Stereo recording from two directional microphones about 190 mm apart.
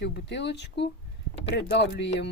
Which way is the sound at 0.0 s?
65° left (ahead or behind).